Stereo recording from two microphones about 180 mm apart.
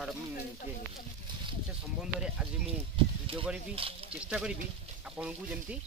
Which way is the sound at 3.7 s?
30° right (ahead or behind).